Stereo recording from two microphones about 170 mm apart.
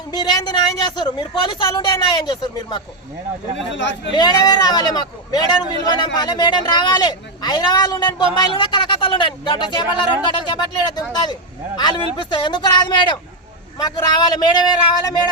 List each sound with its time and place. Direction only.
0.1 s speech: 25° left (ahead or behind)
3.7 s speech: 90° left
4.1 s speech: 25° left (ahead or behind)